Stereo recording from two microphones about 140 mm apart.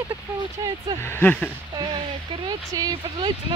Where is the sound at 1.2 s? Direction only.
10° left (ahead or behind).